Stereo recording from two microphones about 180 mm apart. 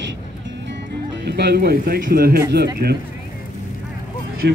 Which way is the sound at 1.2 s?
65° right (ahead or behind).